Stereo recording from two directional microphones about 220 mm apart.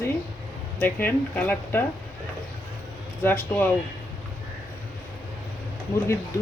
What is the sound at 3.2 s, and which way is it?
Speech, 10° left (ahead or behind).